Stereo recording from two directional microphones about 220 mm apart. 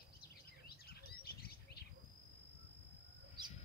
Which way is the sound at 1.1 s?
45° left (ahead or behind).